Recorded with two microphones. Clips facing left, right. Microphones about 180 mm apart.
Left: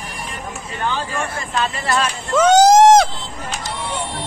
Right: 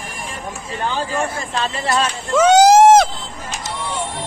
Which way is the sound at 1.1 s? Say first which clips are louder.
Right 2 dB; 30° right (ahead or behind).